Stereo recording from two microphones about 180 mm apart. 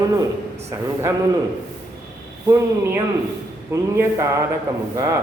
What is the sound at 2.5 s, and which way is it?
A man's voice, 15° right (ahead or behind).